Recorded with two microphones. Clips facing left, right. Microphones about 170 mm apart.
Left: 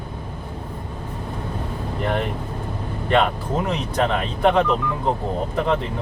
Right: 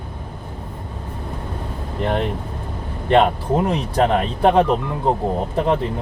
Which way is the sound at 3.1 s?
30° right (ahead or behind).